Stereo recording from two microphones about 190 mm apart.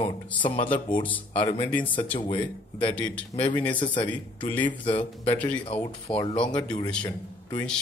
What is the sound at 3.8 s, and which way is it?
Speech, 25° left (ahead or behind).